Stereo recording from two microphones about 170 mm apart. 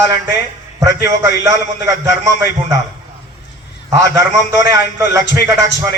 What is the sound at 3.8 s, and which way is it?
A man's voice, 15° right (ahead or behind).